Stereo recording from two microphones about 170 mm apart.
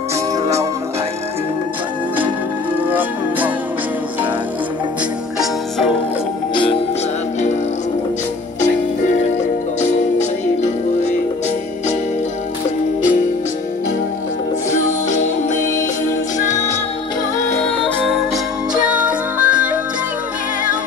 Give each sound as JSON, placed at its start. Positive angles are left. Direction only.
{"t": 2.9, "sound": "music", "side_deg": -10}
{"t": 5.4, "sound": "music", "side_deg": 0}
{"t": 6.5, "sound": "music", "side_deg": 30}
{"t": 9.8, "sound": "music", "side_deg": 45}
{"t": 14.7, "sound": "music", "side_deg": 45}
{"t": 16.3, "sound": "music", "side_deg": 45}
{"t": 17.6, "sound": "music", "side_deg": 0}
{"t": 19.0, "sound": "music", "side_deg": -10}